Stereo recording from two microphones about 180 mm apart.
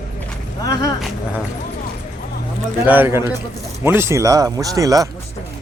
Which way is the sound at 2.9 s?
10° right (ahead or behind).